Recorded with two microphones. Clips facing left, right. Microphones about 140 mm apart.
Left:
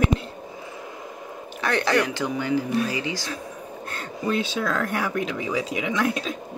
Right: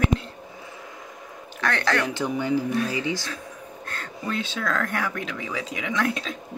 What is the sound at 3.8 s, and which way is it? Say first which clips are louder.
Speech: left 5 dB; 15° left (ahead or behind).